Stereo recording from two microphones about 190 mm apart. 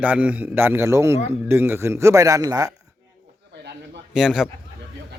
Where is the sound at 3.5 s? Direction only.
60° right (ahead or behind).